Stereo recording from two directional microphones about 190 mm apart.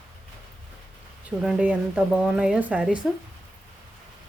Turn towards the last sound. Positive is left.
turn(degrees=-5)  # may be behind; listen again after turning